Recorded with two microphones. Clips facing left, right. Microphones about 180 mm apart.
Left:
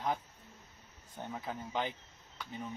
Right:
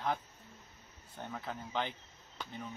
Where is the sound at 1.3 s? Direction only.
10° left (ahead or behind).